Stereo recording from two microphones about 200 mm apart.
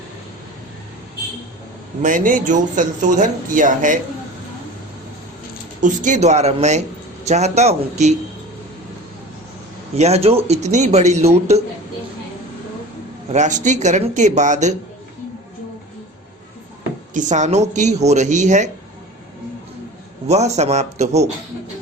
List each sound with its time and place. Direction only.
2.0 s speech: 40° right (ahead or behind)
5.8 s speech: 40° right (ahead or behind)
9.9 s speech: 30° right (ahead or behind)
13.3 s speech: 35° right (ahead or behind)
17.2 s speech: 35° right (ahead or behind)
20.2 s speech: 35° right (ahead or behind)